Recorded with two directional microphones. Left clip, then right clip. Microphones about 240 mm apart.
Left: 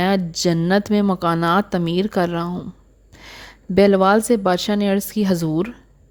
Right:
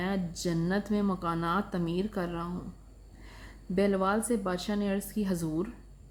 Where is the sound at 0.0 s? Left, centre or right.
Left.